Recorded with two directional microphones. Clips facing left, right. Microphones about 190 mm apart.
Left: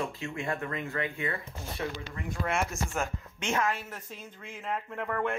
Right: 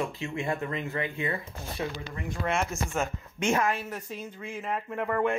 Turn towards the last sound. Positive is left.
turn(degrees=-10)  # may be behind; listen again after turning